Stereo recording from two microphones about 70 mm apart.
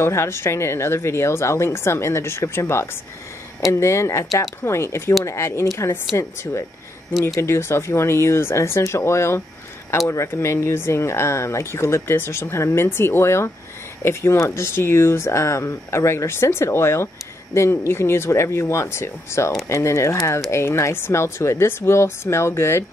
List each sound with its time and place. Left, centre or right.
0.0 s speech: left